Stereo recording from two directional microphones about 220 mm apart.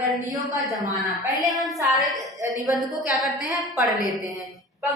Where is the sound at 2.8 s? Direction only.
Centre (ahead or behind).